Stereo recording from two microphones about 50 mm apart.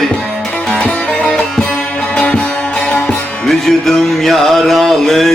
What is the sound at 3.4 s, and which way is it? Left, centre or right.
Music, centre.